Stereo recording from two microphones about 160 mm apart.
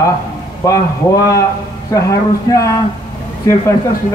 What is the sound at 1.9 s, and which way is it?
Chant, 20° left (ahead or behind).